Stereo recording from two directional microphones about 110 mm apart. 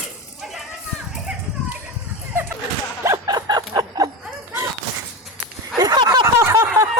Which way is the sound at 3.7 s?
35° right (ahead or behind).